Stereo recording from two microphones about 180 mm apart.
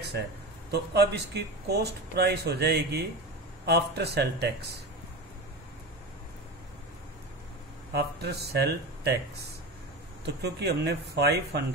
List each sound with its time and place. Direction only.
0.7 s speech: 65° right (ahead or behind)
7.9 s speech: 65° right (ahead or behind)